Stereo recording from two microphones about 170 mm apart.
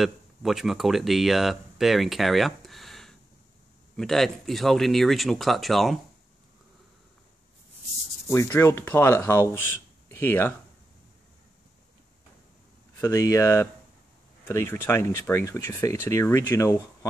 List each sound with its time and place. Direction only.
0.0 s speech: centre (ahead or behind)
8.3 s speech: 15° left (ahead or behind)
10.0 s a sound: 15° left (ahead or behind)
13.0 s speech: 15° left (ahead or behind)